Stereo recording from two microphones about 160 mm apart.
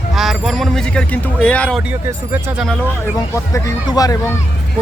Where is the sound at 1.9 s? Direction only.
10° right (ahead or behind).